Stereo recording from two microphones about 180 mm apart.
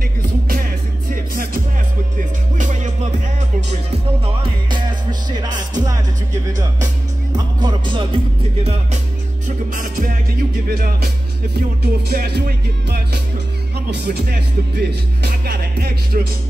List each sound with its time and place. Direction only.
1.3 s music: 50° right (ahead or behind)
3.9 s music: 30° right (ahead or behind)
7.3 s music: 25° right (ahead or behind)
9.7 s music: 50° right (ahead or behind)
10.7 s speech: 60° right (ahead or behind)